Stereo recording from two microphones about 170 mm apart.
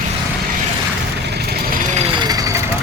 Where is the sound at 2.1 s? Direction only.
25° right (ahead or behind).